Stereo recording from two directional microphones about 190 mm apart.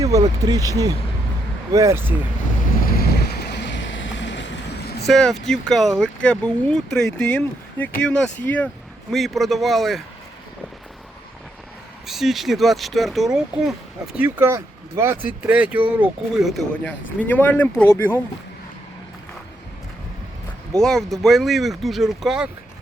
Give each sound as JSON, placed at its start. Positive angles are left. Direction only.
{"t": 0.0, "sound": "speech", "side_deg": -20}
{"t": 2.8, "sound": "boat", "side_deg": 50}
{"t": 5.0, "sound": "speech", "side_deg": 0}
{"t": 12.0, "sound": "speech", "side_deg": 0}
{"t": 20.7, "sound": "speech", "side_deg": 5}